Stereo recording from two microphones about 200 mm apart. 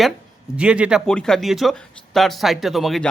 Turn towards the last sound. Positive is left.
turn(degrees=0)  # may be behind; listen again after turning